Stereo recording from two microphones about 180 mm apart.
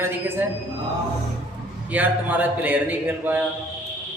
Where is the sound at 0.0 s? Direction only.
10° right (ahead or behind).